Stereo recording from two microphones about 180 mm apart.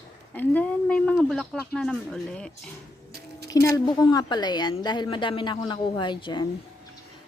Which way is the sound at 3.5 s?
20° left (ahead or behind).